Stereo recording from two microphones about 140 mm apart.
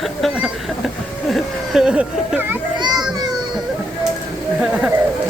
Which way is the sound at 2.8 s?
30° right (ahead or behind).